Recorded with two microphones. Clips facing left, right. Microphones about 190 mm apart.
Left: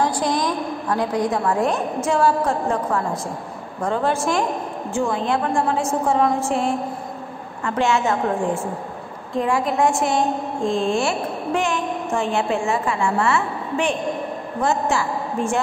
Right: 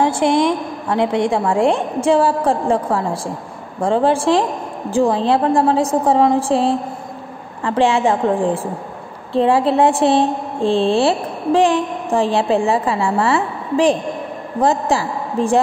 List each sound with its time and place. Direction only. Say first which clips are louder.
0.0 s a woman's voice: right 6 dB; 25° right (ahead or behind)